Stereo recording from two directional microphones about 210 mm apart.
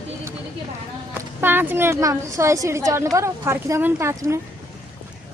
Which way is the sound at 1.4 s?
10° right (ahead or behind).